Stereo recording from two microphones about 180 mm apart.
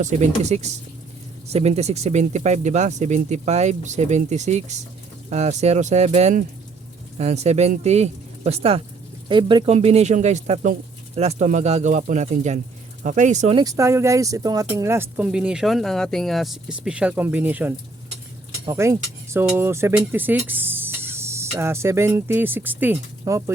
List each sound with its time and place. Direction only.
0.0 s speech: 40° right (ahead or behind)
9.7 s speech: 35° right (ahead or behind)
13.6 s speech: 20° right (ahead or behind)